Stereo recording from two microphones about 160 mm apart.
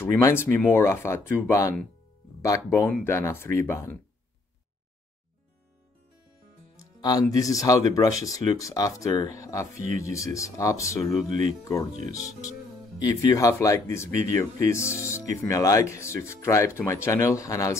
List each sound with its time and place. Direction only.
0.0 s speech: 15° left (ahead or behind)
7.0 s speech: 25° left (ahead or behind)
11.2 s speech: 50° right (ahead or behind)
13.0 s speech: 20° left (ahead or behind)